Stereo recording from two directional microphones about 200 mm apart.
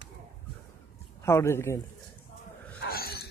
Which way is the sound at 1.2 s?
15° left (ahead or behind).